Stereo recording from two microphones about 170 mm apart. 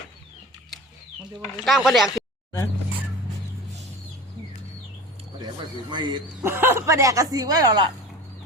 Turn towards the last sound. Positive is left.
turn(degrees=-25)  # may be behind; listen again after turning